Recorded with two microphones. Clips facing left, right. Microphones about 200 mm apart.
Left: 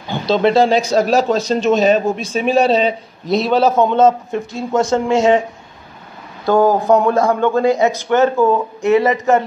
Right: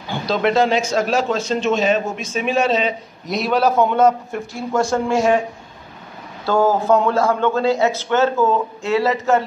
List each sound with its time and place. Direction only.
0.1 s speech: 30° left (ahead or behind)
6.4 s speech: 15° left (ahead or behind)